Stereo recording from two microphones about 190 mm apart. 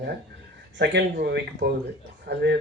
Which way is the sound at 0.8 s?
60° right (ahead or behind).